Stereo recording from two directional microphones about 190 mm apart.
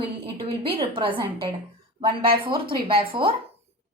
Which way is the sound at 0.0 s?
25° right (ahead or behind).